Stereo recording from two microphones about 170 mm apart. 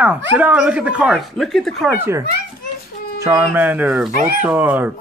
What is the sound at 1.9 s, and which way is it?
A child's voice, 15° right (ahead or behind).